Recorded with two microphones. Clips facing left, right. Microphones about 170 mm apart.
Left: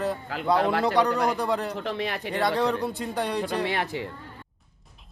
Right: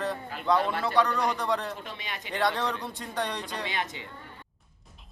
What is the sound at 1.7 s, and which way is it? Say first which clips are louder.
Speech: left 10 dB; 70° left (ahead or behind).